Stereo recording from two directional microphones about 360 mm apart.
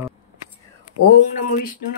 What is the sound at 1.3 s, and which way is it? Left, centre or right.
Speech, left.